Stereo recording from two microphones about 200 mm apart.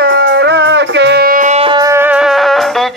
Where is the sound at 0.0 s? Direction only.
60° right (ahead or behind).